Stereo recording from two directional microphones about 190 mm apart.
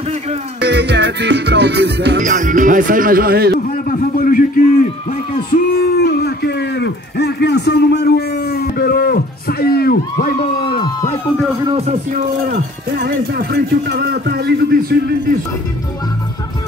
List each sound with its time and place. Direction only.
0.6 s music: 65° right (ahead or behind)
2.1 s speech: 40° right (ahead or behind)
3.8 s a man's voice: 45° left (ahead or behind)
5.5 s speech: 55° left (ahead or behind)
11.6 s speech: 30° right (ahead or behind)
13.0 s speech: 60° right (ahead or behind)